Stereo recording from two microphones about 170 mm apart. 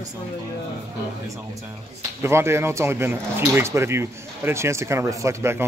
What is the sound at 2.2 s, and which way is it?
Speech, 15° right (ahead or behind).